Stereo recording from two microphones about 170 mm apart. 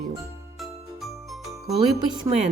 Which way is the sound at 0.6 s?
Centre (ahead or behind).